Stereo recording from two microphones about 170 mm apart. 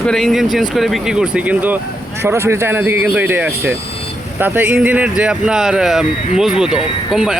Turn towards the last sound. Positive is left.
turn(degrees=-5)  # may be behind; listen again after turning